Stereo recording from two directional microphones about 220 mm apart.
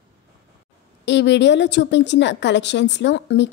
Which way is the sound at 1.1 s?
55° left (ahead or behind).